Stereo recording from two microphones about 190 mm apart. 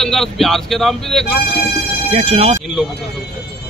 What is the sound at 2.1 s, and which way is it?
Speech, 35° right (ahead or behind).